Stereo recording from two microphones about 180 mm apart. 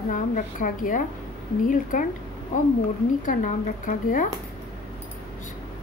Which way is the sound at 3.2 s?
45° left (ahead or behind).